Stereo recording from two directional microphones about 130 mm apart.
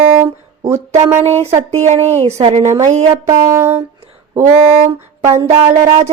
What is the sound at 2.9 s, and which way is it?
Speech, 55° right (ahead or behind).